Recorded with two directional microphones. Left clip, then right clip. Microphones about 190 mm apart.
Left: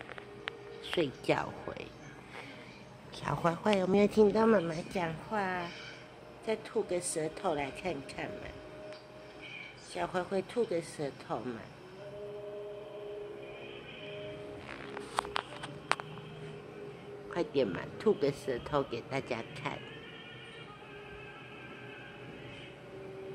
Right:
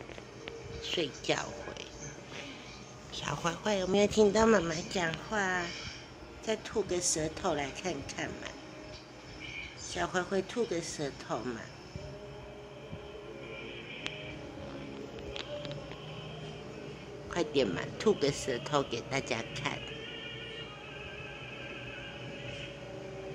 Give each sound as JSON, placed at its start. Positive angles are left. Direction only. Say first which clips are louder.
{"t": 0.8, "sound": "speech", "louder": "left 1 dB", "side_deg": 30}
{"t": 3.2, "sound": "speech", "louder": "left 2 dB", "side_deg": 35}
{"t": 4.3, "sound": "a woman's voice", "louder": "right 1 dB", "side_deg": 10}
{"t": 9.9, "sound": "a woman's voice", "louder": "right 2 dB", "side_deg": 10}
{"t": 17.3, "sound": "speech", "louder": "right 1 dB", "side_deg": 5}